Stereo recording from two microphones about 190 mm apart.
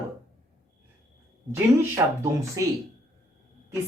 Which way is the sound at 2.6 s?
15° right (ahead or behind).